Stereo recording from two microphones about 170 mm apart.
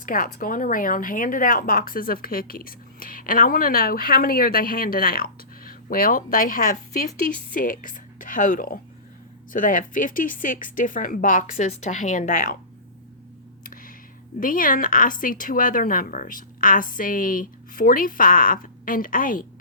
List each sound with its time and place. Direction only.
0.0 s speech: 55° left (ahead or behind)
14.3 s speech: 55° left (ahead or behind)